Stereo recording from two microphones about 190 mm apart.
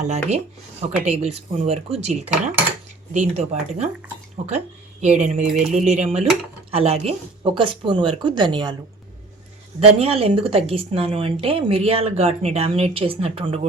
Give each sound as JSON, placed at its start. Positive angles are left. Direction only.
{"t": 0.0, "sound": "speech", "side_deg": -35}
{"t": 9.8, "sound": "speech", "side_deg": -30}